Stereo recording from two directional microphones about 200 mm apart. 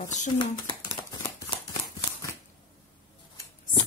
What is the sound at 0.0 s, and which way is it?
Speech, 35° left (ahead or behind).